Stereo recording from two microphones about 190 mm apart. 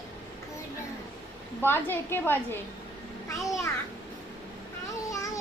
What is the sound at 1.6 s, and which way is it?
Speech, 10° left (ahead or behind).